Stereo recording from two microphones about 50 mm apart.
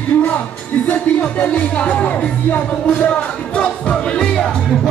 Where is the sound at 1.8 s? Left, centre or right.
Left.